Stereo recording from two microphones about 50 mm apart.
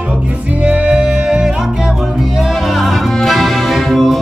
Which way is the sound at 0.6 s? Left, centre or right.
Right.